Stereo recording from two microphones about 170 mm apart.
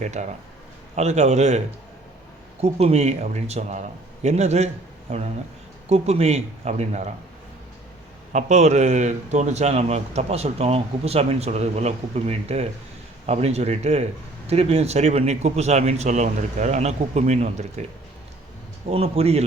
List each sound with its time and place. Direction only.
0.0 s a man's voice: 45° right (ahead or behind)
8.3 s a man's voice: 45° right (ahead or behind)
18.9 s a man's voice: 35° right (ahead or behind)